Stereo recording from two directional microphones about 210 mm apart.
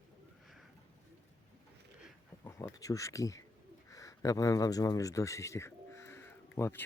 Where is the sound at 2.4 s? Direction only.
15° left (ahead or behind).